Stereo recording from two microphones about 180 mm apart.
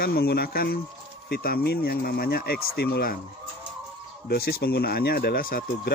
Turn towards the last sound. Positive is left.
turn(degrees=55)  # may be behind; listen again after turning